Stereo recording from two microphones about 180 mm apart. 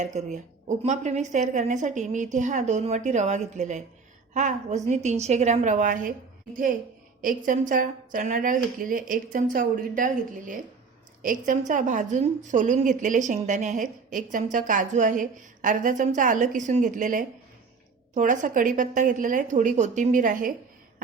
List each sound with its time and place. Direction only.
0.0 s a woman's voice: 40° right (ahead or behind)
7.2 s a woman's voice: 50° right (ahead or behind)